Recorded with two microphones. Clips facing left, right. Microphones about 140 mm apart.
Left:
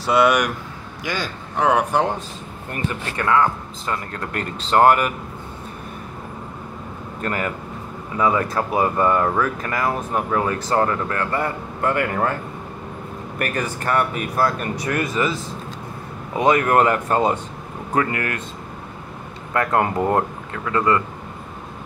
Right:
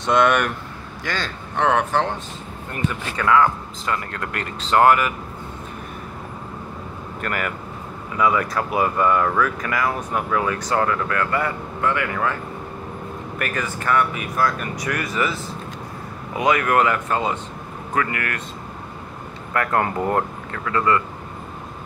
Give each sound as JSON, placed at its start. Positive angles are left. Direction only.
{"t": 0.0, "sound": "a man's voice", "side_deg": 10}
{"t": 4.1, "sound": "speech", "side_deg": 35}
{"t": 7.2, "sound": "speech", "side_deg": 30}
{"t": 13.4, "sound": "speech", "side_deg": 45}
{"t": 16.3, "sound": "speech", "side_deg": 35}
{"t": 17.9, "sound": "speech", "side_deg": 25}
{"t": 19.5, "sound": "speech", "side_deg": 20}